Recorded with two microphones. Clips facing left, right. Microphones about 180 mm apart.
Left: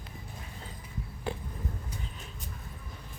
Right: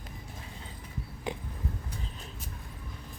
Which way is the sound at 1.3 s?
15° right (ahead or behind).